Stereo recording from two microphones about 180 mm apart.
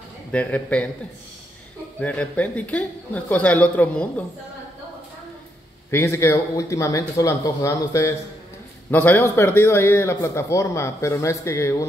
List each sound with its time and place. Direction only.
0.3 s speech: 5° left (ahead or behind)
2.0 s speech: 5° left (ahead or behind)
5.9 s speech: 15° left (ahead or behind)